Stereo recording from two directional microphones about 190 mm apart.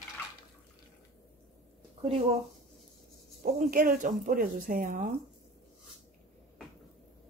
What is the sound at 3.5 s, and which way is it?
Speech, 45° right (ahead or behind).